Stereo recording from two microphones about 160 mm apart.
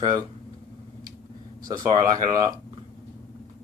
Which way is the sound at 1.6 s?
25° right (ahead or behind).